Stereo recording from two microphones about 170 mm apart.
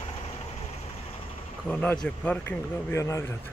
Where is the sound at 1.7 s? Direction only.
10° left (ahead or behind).